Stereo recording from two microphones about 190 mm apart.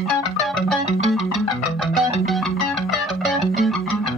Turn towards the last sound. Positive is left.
turn(degrees=0)  # may be behind; listen again after turning